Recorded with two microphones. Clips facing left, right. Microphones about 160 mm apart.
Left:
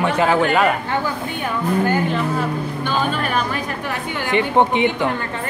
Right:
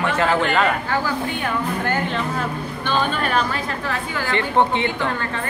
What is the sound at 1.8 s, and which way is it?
A woman's voice, 10° left (ahead or behind).